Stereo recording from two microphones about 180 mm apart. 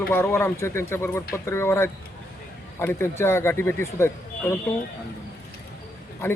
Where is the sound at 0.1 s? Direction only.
15° left (ahead or behind).